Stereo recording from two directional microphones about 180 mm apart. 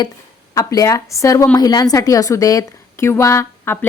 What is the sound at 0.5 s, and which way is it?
A woman's voice, 20° left (ahead or behind).